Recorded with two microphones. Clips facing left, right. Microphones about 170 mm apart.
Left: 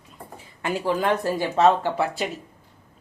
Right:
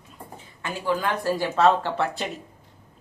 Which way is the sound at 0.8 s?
25° left (ahead or behind).